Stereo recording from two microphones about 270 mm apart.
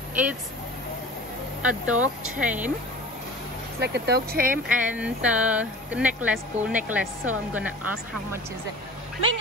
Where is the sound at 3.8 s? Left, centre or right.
Right.